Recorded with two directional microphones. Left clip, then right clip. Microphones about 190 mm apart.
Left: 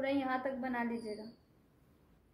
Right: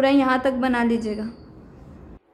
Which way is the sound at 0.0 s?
45° right (ahead or behind).